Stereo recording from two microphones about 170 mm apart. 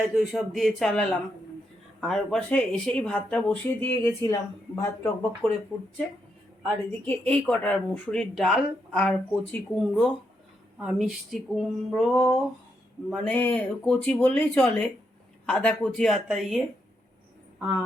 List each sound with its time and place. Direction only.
0.1 s speech: centre (ahead or behind)
7.0 s speech: 10° left (ahead or behind)